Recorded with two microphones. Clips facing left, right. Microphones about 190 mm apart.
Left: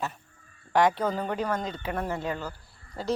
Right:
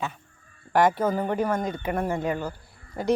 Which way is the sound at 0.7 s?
5° right (ahead or behind).